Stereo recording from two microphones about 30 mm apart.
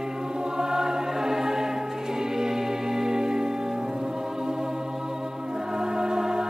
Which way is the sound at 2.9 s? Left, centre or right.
Centre.